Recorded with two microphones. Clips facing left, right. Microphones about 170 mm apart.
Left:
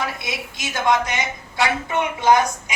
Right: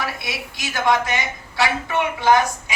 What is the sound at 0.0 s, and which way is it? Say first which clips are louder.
A woman's voice: left 1 dB; 20° left (ahead or behind).